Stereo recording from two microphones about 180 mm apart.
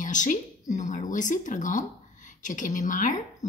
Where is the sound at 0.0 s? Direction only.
45° left (ahead or behind).